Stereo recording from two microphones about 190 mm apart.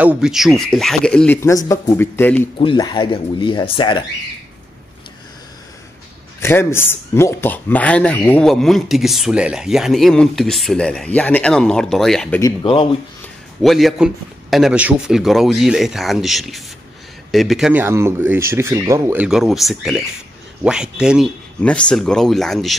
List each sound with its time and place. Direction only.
0.0 s speech: 5° right (ahead or behind); by 2.5 s 10° left (ahead or behind)
2.6 s speech: 25° left (ahead or behind)
6.4 s speech: 15° left (ahead or behind)
12.6 s speech: 30° left (ahead or behind)
13.6 s speech: centre (ahead or behind)
21.5 s speech: 5° left (ahead or behind)